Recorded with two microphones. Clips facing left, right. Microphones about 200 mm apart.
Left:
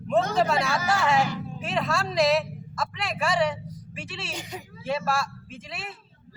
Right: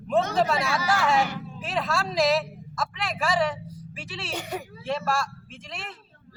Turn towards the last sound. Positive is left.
turn(degrees=0)  # may be behind; listen again after turning